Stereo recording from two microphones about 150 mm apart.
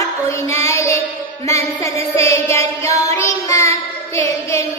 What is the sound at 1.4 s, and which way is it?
Music, 20° left (ahead or behind).